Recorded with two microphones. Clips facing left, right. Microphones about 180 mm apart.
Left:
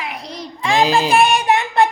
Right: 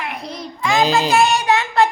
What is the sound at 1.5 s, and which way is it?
Child singing, 20° left (ahead or behind).